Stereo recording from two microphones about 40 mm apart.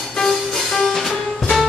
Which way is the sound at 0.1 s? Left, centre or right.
Centre.